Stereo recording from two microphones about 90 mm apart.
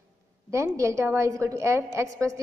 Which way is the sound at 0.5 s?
35° right (ahead or behind).